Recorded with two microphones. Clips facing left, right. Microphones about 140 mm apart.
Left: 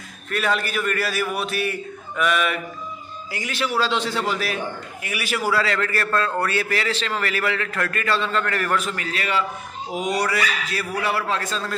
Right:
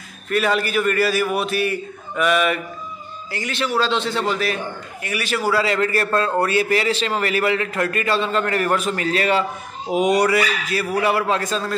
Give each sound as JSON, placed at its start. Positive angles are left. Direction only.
{"t": 0.3, "sound": "a man's voice", "side_deg": -5}
{"t": 3.3, "sound": "a man's voice", "side_deg": 10}
{"t": 5.6, "sound": "a man's voice", "side_deg": -15}
{"t": 9.9, "sound": "a man's voice", "side_deg": -20}